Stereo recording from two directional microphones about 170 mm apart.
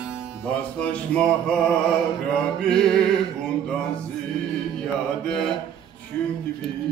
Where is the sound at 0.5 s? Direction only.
5° left (ahead or behind).